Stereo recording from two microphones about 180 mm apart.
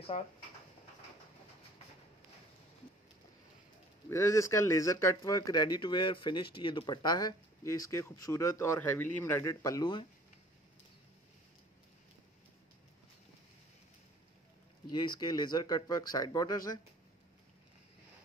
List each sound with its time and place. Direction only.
4.1 s speech: 15° left (ahead or behind)
14.9 s speech: 25° left (ahead or behind)